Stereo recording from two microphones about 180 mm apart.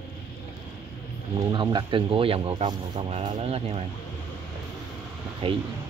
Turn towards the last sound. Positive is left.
turn(degrees=-30)  # may be behind; listen again after turning